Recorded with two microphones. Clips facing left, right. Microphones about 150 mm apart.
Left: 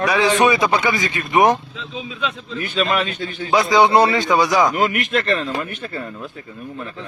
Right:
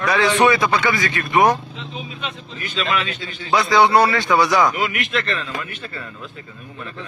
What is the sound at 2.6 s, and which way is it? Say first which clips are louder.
Speech: left 3 dB; 50° left (ahead or behind).